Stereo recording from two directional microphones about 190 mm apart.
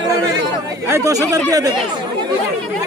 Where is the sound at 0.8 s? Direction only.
15° right (ahead or behind).